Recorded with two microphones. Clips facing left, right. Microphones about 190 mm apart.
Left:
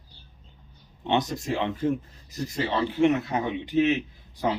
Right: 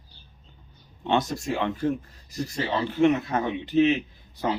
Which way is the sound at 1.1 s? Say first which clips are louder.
Right 1 dB; 20° left (ahead or behind).